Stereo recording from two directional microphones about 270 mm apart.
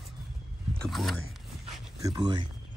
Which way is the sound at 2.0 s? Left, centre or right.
Centre.